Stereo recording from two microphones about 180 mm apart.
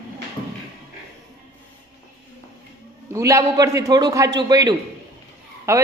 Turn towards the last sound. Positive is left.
turn(degrees=-15)  # may be behind; listen again after turning